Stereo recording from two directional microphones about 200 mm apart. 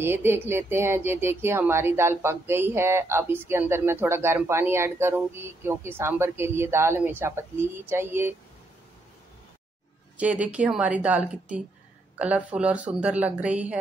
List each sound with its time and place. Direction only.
0.0 s speech: 10° right (ahead or behind)
10.1 s speech: 5° right (ahead or behind)